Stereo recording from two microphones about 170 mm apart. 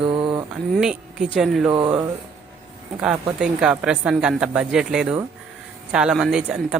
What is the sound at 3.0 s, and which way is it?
A woman's voice, 5° right (ahead or behind).